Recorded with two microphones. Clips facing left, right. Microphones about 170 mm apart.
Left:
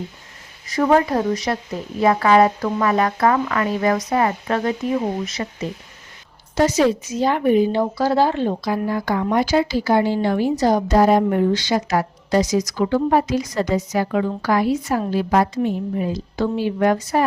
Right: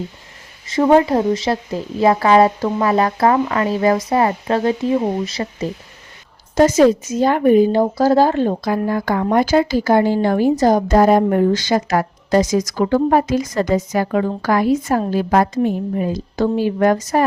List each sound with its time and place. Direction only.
0.7 s speech: 25° right (ahead or behind)
6.6 s speech: 45° right (ahead or behind)